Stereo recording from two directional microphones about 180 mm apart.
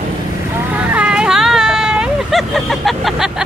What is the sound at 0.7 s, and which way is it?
Vehicle, 5° right (ahead or behind).